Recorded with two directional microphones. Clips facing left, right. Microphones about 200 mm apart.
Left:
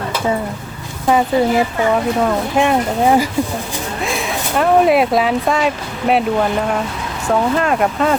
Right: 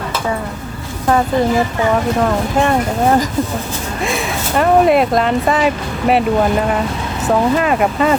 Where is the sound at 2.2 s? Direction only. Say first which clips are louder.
Even; 5° left (ahead or behind).